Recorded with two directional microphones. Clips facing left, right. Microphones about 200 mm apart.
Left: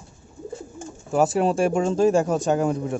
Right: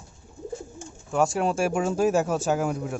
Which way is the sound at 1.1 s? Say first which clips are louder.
Left 4 dB; centre (ahead or behind).